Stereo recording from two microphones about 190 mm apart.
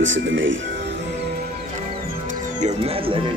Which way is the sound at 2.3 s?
40° right (ahead or behind).